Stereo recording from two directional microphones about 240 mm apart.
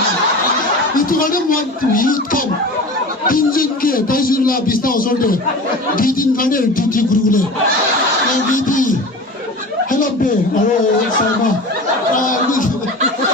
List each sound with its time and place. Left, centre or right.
0.9 s speech: left
8.5 s music: left